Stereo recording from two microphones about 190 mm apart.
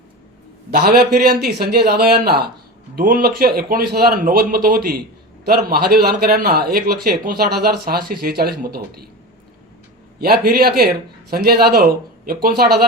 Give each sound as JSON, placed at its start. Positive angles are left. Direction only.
{"t": 0.7, "sound": "a man's voice", "side_deg": -55}
{"t": 10.2, "sound": "a man's voice", "side_deg": -55}